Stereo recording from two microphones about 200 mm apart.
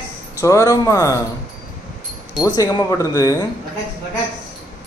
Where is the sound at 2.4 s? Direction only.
15° left (ahead or behind).